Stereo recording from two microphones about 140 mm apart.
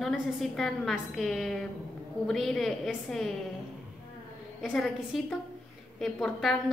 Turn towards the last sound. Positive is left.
turn(degrees=0)  # may be behind; listen again after turning